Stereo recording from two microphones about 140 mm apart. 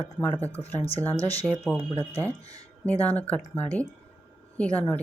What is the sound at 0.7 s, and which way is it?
Speech, 45° left (ahead or behind).